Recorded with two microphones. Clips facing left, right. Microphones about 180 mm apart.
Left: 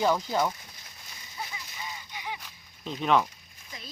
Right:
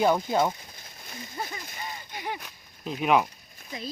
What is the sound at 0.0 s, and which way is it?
Speech, 20° right (ahead or behind).